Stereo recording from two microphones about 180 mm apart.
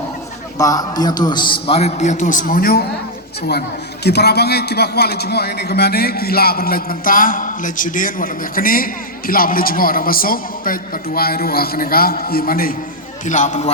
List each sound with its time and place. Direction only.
0.6 s a man's voice: 20° left (ahead or behind); by 2.8 s 55° left (ahead or behind)
4.0 s a man's voice: 65° left (ahead or behind)
13.2 s a man's voice: 45° left (ahead or behind)